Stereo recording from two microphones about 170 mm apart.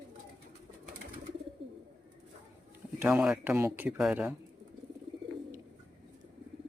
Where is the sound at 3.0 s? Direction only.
5° right (ahead or behind).